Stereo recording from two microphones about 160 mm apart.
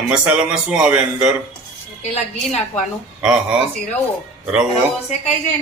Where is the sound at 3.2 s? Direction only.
5° right (ahead or behind).